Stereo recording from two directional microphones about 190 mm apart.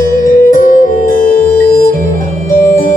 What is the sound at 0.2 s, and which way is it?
Music, 45° left (ahead or behind).